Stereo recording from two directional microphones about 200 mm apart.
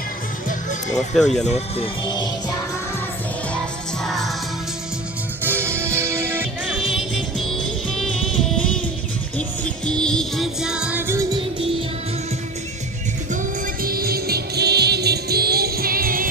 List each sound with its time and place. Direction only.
0.9 s speech: centre (ahead or behind)
1.4 s speech: 30° left (ahead or behind)
4.0 s music: centre (ahead or behind)
5.4 s music: 10° right (ahead or behind)
9.8 s music: 5° left (ahead or behind); by 11.4 s 15° right (ahead or behind)
13.8 s music: 50° right (ahead or behind)